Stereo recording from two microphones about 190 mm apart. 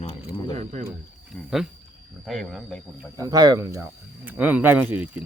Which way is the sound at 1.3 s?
Centre (ahead or behind).